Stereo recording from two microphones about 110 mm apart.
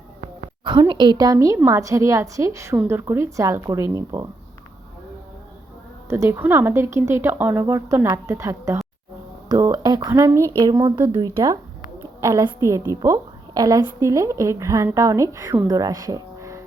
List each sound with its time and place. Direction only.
0.6 s a woman's voice: 45° right (ahead or behind); by 4.3 s 30° right (ahead or behind)
6.1 s a woman's voice: 25° right (ahead or behind)
10.1 s a woman's voice: 25° right (ahead or behind)
12.2 s a woman's voice: 30° right (ahead or behind)